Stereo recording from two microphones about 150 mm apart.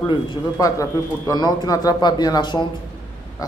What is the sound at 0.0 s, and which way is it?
Speech, 30° left (ahead or behind).